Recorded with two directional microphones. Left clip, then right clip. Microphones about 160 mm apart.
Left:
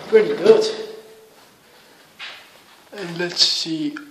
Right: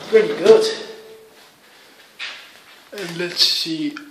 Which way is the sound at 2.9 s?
20° left (ahead or behind).